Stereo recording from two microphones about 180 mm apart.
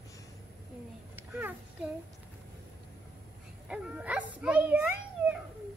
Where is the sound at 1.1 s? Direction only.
10° right (ahead or behind).